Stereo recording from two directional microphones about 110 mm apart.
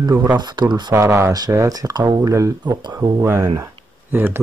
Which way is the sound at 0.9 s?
30° right (ahead or behind).